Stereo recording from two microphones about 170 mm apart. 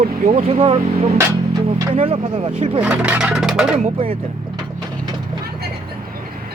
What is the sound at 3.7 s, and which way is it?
Speech, 35° right (ahead or behind).